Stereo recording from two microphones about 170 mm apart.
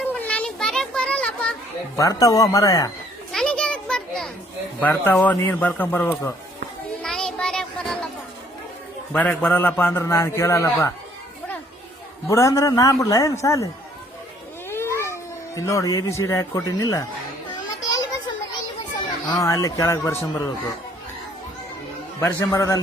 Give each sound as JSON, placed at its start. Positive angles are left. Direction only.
{"t": 0.0, "sound": "children playing", "side_deg": 10}
{"t": 2.0, "sound": "a man's voice", "side_deg": 20}
{"t": 3.3, "sound": "children playing", "side_deg": 5}
{"t": 4.8, "sound": "a man's voice", "side_deg": 10}
{"t": 7.0, "sound": "music", "side_deg": 5}
{"t": 9.1, "sound": "a man's voice", "side_deg": 10}
{"t": 12.3, "sound": "a man's voice", "side_deg": 20}
{"t": 14.7, "sound": "speech", "side_deg": 15}
{"t": 19.3, "sound": "a man's voice", "side_deg": 20}
{"t": 22.2, "sound": "a man's voice", "side_deg": 10}